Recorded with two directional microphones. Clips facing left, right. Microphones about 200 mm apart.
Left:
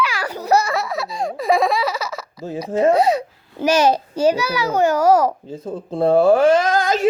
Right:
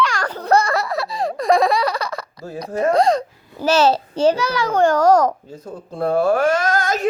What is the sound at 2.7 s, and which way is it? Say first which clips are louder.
Speech: left 3 dB; 25° left (ahead or behind).